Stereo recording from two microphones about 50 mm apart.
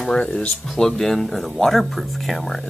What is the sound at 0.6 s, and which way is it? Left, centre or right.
Speech, centre.